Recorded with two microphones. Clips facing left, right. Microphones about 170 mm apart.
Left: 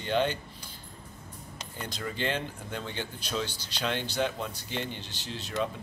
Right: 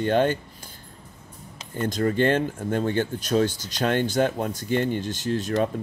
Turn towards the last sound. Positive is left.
turn(degrees=-45)  # may be behind; listen again after turning